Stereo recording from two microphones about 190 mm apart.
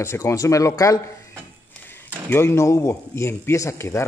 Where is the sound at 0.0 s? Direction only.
15° left (ahead or behind).